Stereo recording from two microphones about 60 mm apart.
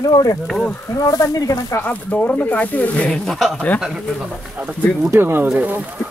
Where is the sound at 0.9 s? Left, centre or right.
Left.